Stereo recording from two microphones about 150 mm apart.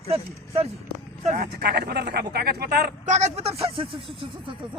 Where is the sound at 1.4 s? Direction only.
90° right.